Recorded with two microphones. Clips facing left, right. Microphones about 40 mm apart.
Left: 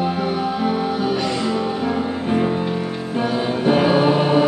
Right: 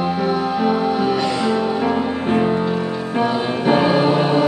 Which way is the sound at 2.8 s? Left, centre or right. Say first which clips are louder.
Right 3 dB; centre.